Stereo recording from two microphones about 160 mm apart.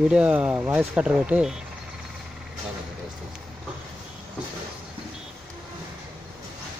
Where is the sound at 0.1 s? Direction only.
5° right (ahead or behind).